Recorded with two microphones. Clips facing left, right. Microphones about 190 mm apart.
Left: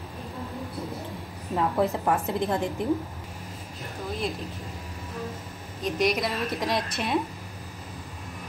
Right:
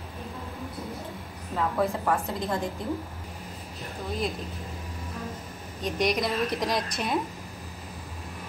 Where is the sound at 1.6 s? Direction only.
20° left (ahead or behind).